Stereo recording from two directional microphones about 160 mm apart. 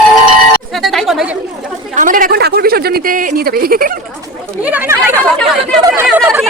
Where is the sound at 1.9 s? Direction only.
55° right (ahead or behind).